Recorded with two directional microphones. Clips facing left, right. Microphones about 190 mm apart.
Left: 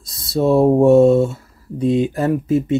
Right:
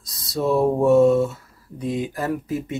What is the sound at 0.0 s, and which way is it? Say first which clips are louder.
Speech: left 6 dB; 30° left (ahead or behind).